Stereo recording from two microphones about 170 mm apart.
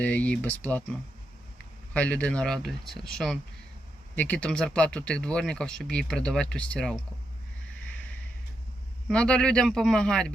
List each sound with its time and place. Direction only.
0.0 s speech: 10° left (ahead or behind)
4.1 s speech: 10° left (ahead or behind)
9.0 s speech: 5° left (ahead or behind)